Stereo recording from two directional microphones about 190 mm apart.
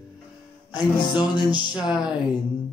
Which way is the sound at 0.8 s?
25° left (ahead or behind).